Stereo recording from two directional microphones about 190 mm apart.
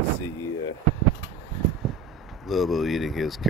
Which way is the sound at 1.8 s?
Centre (ahead or behind).